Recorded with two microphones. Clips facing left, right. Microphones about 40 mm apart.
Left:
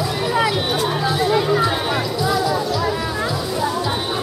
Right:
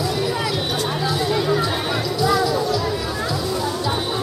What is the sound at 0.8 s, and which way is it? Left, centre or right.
Music, centre.